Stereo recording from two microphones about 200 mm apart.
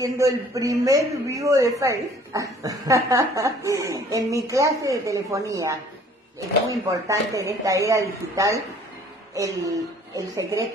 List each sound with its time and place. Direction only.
0.0 s a man's voice: 15° right (ahead or behind)